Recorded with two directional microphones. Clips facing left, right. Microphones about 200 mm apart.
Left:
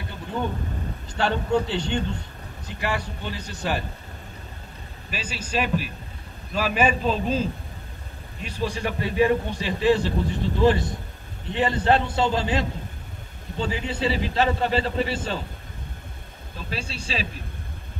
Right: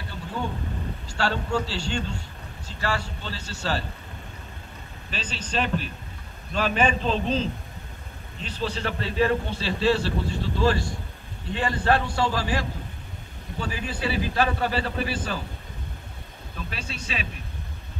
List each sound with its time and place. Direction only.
1.0 s a man's voice: 20° left (ahead or behind)
5.1 s a man's voice: 10° left (ahead or behind); by 15.4 s 25° left (ahead or behind)
16.7 s speech: 30° left (ahead or behind)